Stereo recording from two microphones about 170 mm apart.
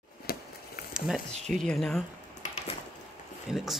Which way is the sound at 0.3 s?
60° left (ahead or behind).